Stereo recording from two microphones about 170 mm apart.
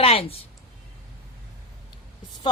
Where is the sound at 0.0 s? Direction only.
35° left (ahead or behind).